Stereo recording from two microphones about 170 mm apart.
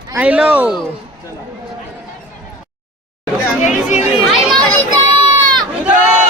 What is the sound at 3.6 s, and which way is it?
Chatter, 45° left (ahead or behind).